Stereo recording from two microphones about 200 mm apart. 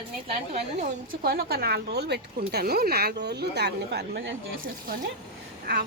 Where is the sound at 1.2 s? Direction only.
50° right (ahead or behind).